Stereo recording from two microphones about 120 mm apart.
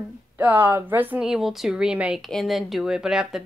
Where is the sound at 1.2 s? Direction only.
5° right (ahead or behind).